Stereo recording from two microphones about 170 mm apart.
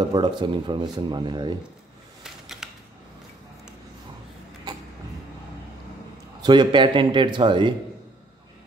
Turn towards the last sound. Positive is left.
turn(degrees=-30)  # may be behind; listen again after turning